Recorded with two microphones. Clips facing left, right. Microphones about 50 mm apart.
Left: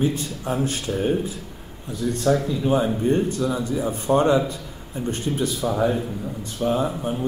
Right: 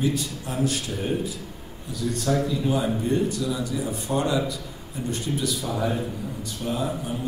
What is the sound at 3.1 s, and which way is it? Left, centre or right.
A man's voice, left.